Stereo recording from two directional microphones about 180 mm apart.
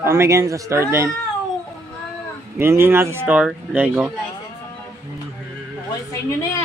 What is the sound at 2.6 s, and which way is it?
Speech, 15° right (ahead or behind).